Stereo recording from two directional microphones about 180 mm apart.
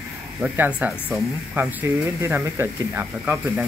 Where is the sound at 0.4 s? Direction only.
5° right (ahead or behind).